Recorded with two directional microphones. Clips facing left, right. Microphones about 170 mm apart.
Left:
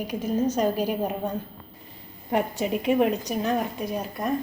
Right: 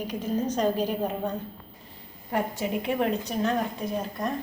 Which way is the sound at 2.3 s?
20° left (ahead or behind).